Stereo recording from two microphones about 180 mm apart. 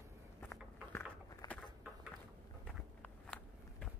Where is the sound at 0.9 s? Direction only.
15° left (ahead or behind).